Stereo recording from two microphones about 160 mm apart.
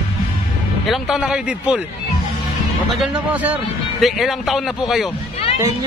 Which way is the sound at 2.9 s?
Centre (ahead or behind).